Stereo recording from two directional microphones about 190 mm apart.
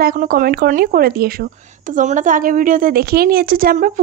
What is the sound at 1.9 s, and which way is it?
A woman's voice, 40° right (ahead or behind).